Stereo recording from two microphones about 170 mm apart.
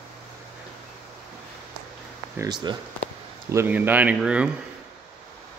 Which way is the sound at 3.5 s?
10° right (ahead or behind).